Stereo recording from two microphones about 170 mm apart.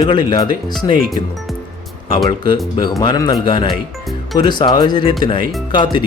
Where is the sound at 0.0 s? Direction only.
25° left (ahead or behind).